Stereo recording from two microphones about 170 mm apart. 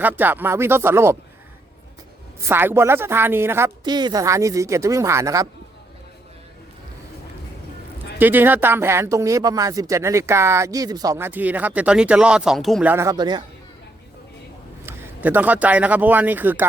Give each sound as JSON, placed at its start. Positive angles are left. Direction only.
{"t": 0.0, "sound": "speech", "side_deg": -10}
{"t": 2.4, "sound": "speech", "side_deg": -15}
{"t": 3.8, "sound": "speech", "side_deg": -25}
{"t": 8.2, "sound": "speech", "side_deg": -10}
{"t": 12.9, "sound": "speech", "side_deg": -15}
{"t": 14.8, "sound": "a man's voice", "side_deg": -10}